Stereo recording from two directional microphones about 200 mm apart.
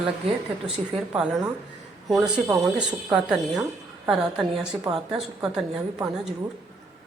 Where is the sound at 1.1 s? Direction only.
5° right (ahead or behind).